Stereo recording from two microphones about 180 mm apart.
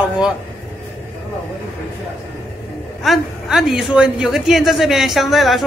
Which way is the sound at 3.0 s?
Centre (ahead or behind).